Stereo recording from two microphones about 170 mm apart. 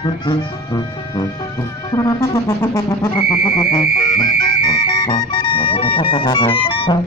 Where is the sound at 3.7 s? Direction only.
55° left (ahead or behind).